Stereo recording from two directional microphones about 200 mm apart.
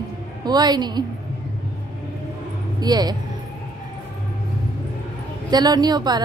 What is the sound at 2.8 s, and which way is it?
Speech, 20° right (ahead or behind).